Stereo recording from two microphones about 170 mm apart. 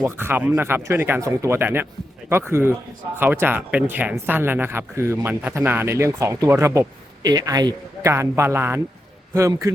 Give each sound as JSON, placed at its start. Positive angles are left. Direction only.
{"t": 0.0, "sound": "speech", "side_deg": -15}